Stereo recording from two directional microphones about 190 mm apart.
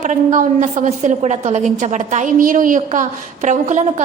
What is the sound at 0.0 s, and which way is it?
A woman's voice, 40° right (ahead or behind).